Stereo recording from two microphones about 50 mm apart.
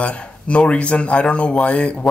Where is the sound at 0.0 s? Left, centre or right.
Left.